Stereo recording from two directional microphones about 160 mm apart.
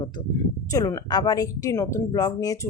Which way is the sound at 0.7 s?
20° left (ahead or behind).